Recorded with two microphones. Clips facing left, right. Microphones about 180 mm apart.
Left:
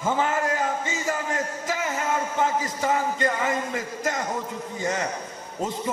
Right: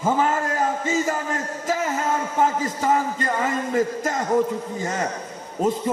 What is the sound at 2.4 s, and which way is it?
A man's voice, 40° right (ahead or behind).